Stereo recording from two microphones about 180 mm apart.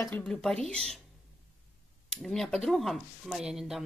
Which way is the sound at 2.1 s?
Centre (ahead or behind).